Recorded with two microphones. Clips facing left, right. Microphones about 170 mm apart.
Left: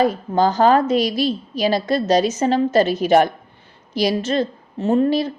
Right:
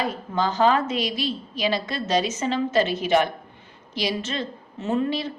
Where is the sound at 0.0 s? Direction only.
40° left (ahead or behind).